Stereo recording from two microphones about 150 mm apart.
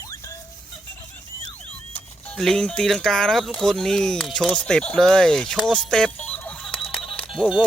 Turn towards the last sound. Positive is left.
turn(degrees=5)  # may be behind; listen again after turning